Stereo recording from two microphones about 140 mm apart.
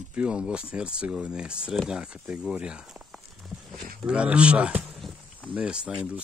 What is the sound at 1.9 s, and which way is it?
Walk, 5° right (ahead or behind).